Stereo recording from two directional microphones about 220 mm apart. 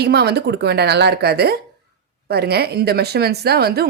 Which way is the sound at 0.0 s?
45° right (ahead or behind).